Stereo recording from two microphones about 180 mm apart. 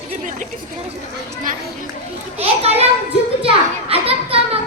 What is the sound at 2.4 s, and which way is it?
Children playing, 35° right (ahead or behind).